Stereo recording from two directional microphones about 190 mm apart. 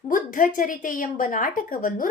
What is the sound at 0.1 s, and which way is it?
A woman's voice, 45° left (ahead or behind).